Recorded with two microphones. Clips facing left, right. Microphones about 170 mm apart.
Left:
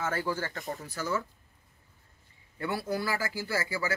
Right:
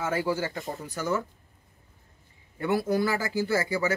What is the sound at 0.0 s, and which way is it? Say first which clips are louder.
Speech: right 4 dB; 15° right (ahead or behind).